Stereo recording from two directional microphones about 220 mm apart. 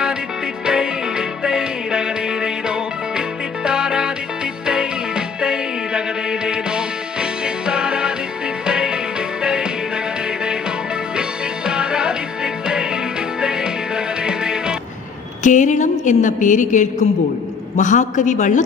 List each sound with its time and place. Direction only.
0.7 s music: 5° right (ahead or behind)
11.1 s music: 5° right (ahead or behind)
15.4 s a sound: 35° left (ahead or behind)
17.7 s a man's voice: 35° left (ahead or behind)